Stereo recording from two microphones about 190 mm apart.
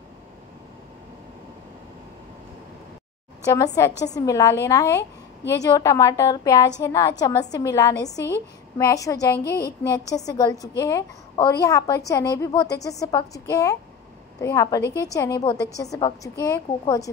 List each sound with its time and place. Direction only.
3.4 s a woman's voice: 20° left (ahead or behind)
9.4 s speech: 55° left (ahead or behind)
9.8 s a woman's voice: 20° left (ahead or behind)